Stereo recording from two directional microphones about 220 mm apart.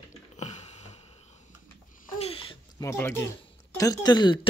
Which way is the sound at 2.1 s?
25° left (ahead or behind).